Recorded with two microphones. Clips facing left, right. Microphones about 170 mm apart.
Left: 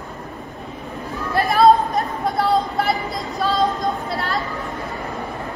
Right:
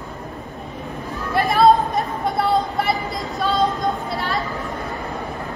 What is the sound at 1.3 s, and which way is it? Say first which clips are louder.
Chatter: left 1 dB; centre (ahead or behind).